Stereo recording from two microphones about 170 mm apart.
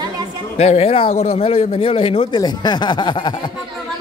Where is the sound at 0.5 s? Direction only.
40° left (ahead or behind).